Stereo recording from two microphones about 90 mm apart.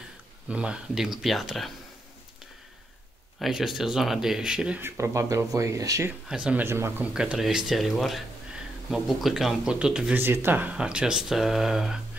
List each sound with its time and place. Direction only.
0.5 s speech: 10° right (ahead or behind)
3.3 s speech: 5° right (ahead or behind)
4.7 s speech: 30° right (ahead or behind)
6.2 s speech: 10° right (ahead or behind)
6.6 s speech: 30° right (ahead or behind)
7.2 s speech: 5° right (ahead or behind)
10.1 s speech: 25° right (ahead or behind); by 12.0 s 5° right (ahead or behind)